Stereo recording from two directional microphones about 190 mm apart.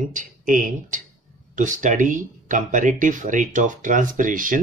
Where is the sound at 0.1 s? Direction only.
45° right (ahead or behind).